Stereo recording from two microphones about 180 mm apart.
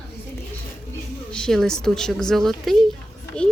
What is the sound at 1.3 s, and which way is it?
A woman's voice, 5° left (ahead or behind).